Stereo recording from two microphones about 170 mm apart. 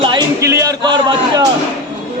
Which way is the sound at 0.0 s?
25° right (ahead or behind).